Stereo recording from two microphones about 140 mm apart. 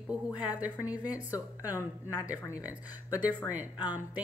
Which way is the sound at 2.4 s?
20° left (ahead or behind).